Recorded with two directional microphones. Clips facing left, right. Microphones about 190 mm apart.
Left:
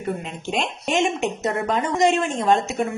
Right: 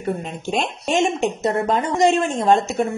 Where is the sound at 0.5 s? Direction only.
40° right (ahead or behind).